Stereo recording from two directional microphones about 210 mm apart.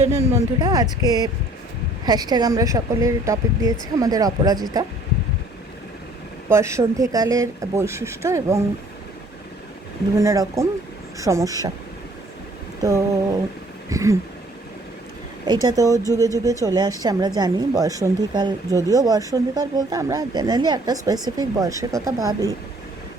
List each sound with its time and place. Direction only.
0.6 s speech: 20° right (ahead or behind)
6.5 s speech: 15° right (ahead or behind)
10.2 s speech: 15° right (ahead or behind)
12.8 s a sound: 15° right (ahead or behind)
15.6 s speech: 15° right (ahead or behind)